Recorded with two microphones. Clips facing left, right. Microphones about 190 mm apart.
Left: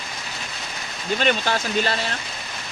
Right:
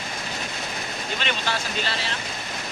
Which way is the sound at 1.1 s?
45° left (ahead or behind).